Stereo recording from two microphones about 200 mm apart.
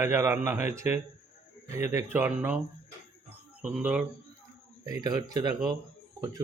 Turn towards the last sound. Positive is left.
turn(degrees=-15)  # may be behind; listen again after turning